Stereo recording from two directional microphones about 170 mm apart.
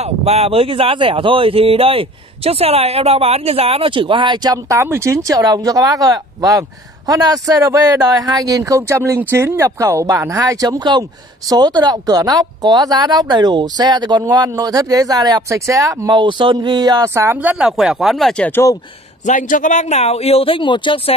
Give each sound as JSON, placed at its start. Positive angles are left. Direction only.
{"t": 0.0, "sound": "speech", "side_deg": -40}
{"t": 19.2, "sound": "speech", "side_deg": 50}